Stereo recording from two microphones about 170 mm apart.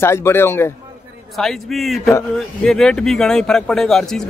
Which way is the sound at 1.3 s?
Centre (ahead or behind).